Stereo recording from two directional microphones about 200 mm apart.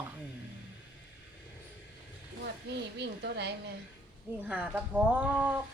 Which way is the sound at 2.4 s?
55° right (ahead or behind).